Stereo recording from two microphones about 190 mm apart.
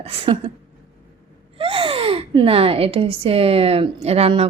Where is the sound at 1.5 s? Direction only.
30° right (ahead or behind).